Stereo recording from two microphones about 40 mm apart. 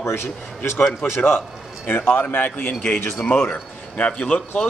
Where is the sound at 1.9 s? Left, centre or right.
Left.